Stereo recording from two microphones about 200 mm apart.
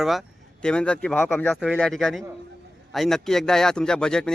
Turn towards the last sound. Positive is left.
turn(degrees=5)  # may be behind; listen again after turning